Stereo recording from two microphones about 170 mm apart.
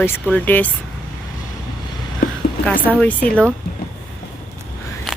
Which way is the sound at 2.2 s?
60° left (ahead or behind).